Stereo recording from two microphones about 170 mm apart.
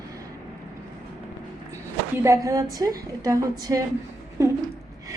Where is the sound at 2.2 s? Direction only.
15° right (ahead or behind).